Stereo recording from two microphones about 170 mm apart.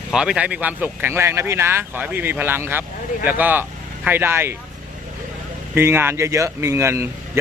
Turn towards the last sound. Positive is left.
turn(degrees=-15)  # may be behind; listen again after turning